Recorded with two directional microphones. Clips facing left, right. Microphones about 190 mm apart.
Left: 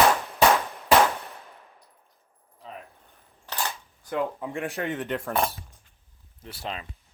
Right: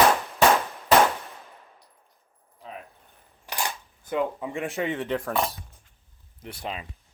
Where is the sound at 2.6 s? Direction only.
5° right (ahead or behind).